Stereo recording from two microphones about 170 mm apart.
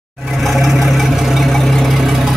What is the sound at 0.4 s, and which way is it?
Vehicle, centre (ahead or behind).